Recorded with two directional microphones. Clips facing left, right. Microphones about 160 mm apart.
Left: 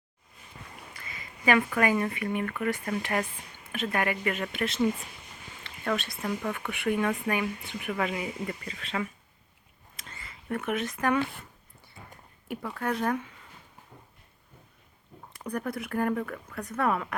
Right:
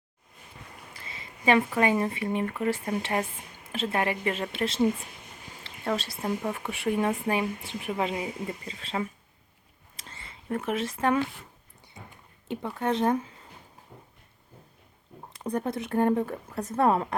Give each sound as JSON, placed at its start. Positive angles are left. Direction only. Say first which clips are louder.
{"t": 0.9, "sound": "a woman's voice", "louder": "even", "side_deg": -30}
{"t": 9.9, "sound": "a sound", "louder": "even", "side_deg": -30}
{"t": 12.5, "sound": "a woman's voice", "louder": "right 3 dB", "side_deg": -25}
{"t": 15.4, "sound": "a woman's voice", "louder": "right 3 dB", "side_deg": -25}